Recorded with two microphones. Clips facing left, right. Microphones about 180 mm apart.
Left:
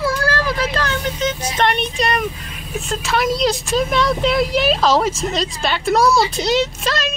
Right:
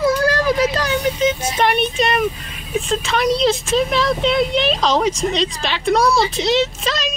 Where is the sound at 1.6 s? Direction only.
5° right (ahead or behind).